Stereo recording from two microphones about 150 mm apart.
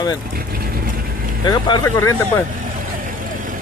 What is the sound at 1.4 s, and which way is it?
Speech, 30° left (ahead or behind).